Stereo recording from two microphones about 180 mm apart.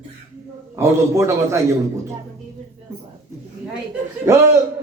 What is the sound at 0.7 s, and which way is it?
A man's voice, 15° right (ahead or behind).